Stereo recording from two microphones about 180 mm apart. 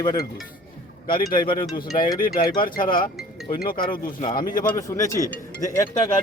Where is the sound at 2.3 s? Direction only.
55° left (ahead or behind).